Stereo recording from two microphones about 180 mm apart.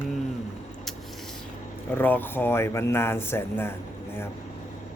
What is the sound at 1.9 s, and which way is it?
Speech, 10° left (ahead or behind).